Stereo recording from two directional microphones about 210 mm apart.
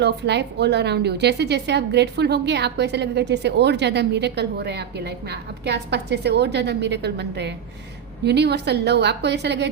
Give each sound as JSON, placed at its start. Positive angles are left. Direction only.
{"t": 0.0, "sound": "a woman's voice", "side_deg": -55}